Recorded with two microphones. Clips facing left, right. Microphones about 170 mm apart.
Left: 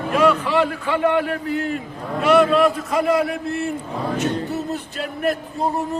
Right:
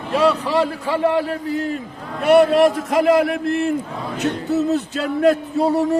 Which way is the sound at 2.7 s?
90° right.